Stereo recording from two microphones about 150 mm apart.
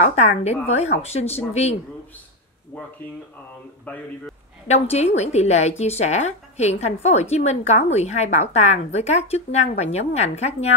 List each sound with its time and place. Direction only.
0.0 s a woman's voice: 50° left (ahead or behind)
4.6 s a woman's voice: 45° left (ahead or behind)